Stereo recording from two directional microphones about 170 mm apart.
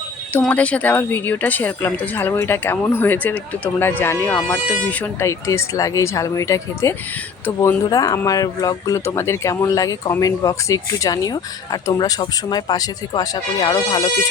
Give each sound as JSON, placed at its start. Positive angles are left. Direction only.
{"t": 0.3, "sound": "speech", "side_deg": 10}